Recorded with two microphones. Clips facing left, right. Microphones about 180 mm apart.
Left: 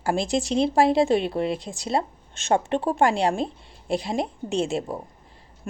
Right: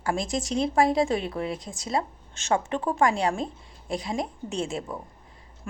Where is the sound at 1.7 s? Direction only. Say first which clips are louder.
Left 4 dB; 20° left (ahead or behind).